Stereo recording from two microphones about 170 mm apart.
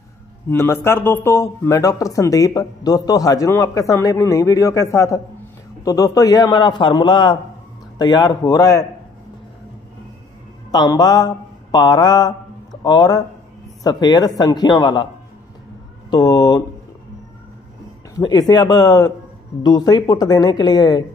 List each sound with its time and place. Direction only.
0.5 s a man's voice: 15° left (ahead or behind)
10.7 s a man's voice: 25° left (ahead or behind)
16.1 s a man's voice: 25° left (ahead or behind)
18.1 s a man's voice: 25° left (ahead or behind)